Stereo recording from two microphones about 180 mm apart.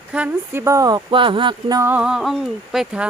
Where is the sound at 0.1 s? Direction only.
10° right (ahead or behind); by 1.8 s 25° right (ahead or behind).